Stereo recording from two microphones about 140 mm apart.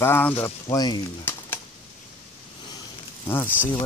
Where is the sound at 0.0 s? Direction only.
15° left (ahead or behind).